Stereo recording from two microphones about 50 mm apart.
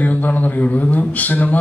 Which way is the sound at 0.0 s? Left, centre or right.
Left.